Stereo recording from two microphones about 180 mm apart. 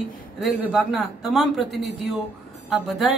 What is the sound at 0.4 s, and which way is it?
A woman's voice, 5° right (ahead or behind).